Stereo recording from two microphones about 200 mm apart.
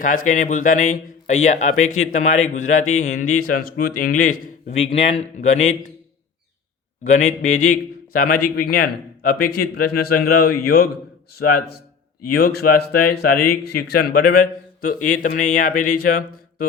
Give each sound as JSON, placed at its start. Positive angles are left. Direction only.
{"t": 0.0, "sound": "speech", "side_deg": 40}
{"t": 7.0, "sound": "speech", "side_deg": 35}